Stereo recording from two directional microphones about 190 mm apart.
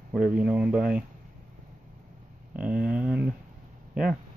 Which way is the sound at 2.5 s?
5° right (ahead or behind).